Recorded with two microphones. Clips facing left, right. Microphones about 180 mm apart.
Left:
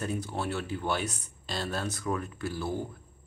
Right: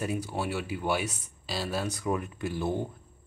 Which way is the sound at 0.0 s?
10° right (ahead or behind).